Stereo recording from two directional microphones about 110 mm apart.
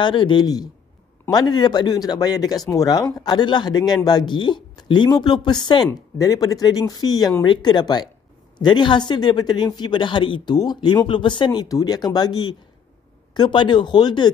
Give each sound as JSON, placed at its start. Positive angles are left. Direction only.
{"t": 0.0, "sound": "speech", "side_deg": 45}